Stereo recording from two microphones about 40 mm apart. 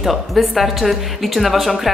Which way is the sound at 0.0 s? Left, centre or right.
Centre.